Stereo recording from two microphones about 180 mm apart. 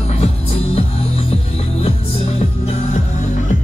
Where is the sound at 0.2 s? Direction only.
35° left (ahead or behind).